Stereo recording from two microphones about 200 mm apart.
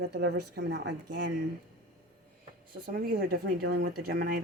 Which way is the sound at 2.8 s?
50° right (ahead or behind).